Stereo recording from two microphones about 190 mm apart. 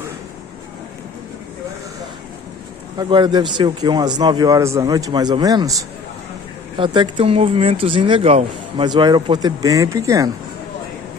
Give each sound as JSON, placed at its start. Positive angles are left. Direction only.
{"t": 3.0, "sound": "a man's voice", "side_deg": -25}
{"t": 6.8, "sound": "a man's voice", "side_deg": -25}
{"t": 8.8, "sound": "a man's voice", "side_deg": -25}